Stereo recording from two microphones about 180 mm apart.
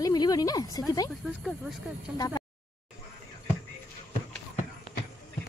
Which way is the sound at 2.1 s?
20° left (ahead or behind).